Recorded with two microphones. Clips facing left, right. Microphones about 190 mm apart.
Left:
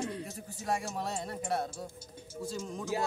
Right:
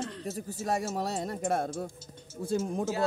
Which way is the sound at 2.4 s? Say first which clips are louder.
Right 8 dB; 60° right (ahead or behind).